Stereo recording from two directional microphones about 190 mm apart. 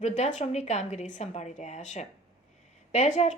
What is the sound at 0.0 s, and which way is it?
A woman's voice, 40° left (ahead or behind).